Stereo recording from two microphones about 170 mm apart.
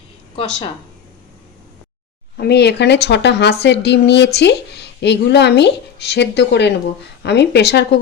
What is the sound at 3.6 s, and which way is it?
A woman's voice, 90° left.